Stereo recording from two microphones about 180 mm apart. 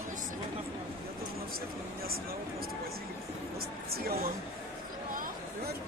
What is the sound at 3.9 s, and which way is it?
Speech, 60° right (ahead or behind).